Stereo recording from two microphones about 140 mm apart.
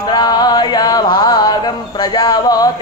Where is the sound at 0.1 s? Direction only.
30° left (ahead or behind).